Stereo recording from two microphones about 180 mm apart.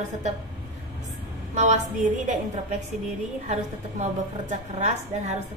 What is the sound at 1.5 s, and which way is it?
A woman's voice, 40° right (ahead or behind).